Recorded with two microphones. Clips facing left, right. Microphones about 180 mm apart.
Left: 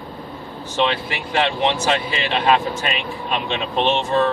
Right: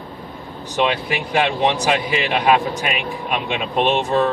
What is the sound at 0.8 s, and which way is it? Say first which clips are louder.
A man's voice: right 2 dB; 15° right (ahead or behind).